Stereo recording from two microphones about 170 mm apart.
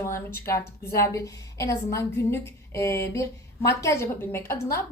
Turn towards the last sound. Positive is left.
turn(degrees=15)  # may be behind; listen again after turning